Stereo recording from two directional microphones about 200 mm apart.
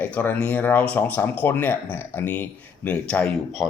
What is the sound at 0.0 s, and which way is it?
Speech, 10° left (ahead or behind).